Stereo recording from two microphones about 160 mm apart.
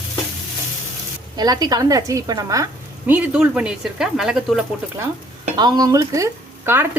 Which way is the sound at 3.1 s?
10° right (ahead or behind).